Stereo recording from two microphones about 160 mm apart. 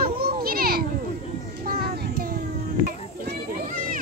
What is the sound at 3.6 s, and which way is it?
Children playing, 55° right (ahead or behind).